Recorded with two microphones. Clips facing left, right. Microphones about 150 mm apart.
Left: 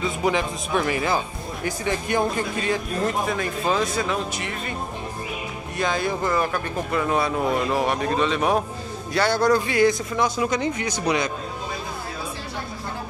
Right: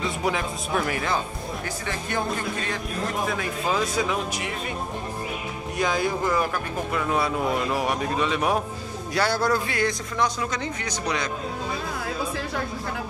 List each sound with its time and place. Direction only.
0.0 s speech: centre (ahead or behind)
1.9 s speech: 15° left (ahead or behind)
3.3 s speech: 5° right (ahead or behind)
5.8 s speech: 10° right (ahead or behind); by 11.2 s 10° left (ahead or behind)